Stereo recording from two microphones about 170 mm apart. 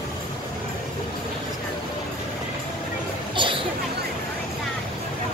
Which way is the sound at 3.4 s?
30° right (ahead or behind).